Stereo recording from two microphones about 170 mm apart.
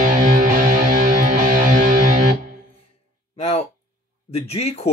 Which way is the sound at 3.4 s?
35° left (ahead or behind).